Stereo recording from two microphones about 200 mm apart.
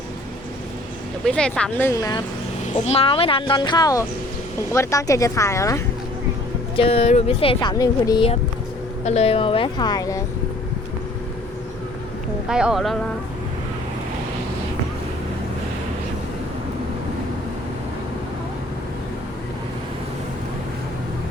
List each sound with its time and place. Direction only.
1.2 s speech: 5° left (ahead or behind)
1.9 s speech: 20° left (ahead or behind)
2.8 s speech: 30° left (ahead or behind); by 5.8 s 15° left (ahead or behind)
6.7 s speech: 30° left (ahead or behind)
9.0 s speech: 30° left (ahead or behind)
12.5 s speech: 5° right (ahead or behind)